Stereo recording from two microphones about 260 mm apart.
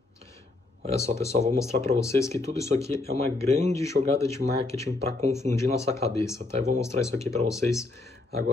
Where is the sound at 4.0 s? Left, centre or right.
Right.